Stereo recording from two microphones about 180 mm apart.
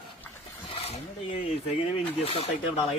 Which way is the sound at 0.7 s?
35° left (ahead or behind).